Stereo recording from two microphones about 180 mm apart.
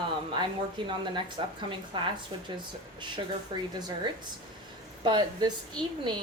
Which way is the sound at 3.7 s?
20° right (ahead or behind).